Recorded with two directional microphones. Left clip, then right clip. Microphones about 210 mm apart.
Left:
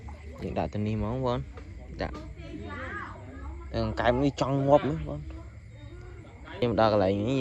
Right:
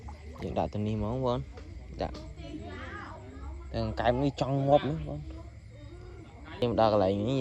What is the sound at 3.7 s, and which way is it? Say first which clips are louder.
Speech: left 2 dB; centre (ahead or behind).